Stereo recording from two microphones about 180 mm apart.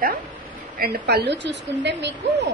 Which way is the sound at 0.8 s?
60° right (ahead or behind).